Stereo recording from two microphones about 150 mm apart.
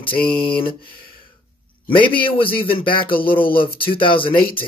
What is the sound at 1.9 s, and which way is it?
A man's voice, 35° left (ahead or behind).